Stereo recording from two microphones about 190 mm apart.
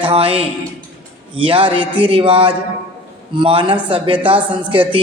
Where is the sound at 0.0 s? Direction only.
30° right (ahead or behind).